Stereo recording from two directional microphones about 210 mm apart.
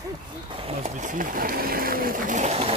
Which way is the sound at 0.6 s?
30° right (ahead or behind).